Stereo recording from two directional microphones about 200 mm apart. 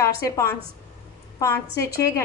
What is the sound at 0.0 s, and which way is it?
A woman's voice, 15° left (ahead or behind).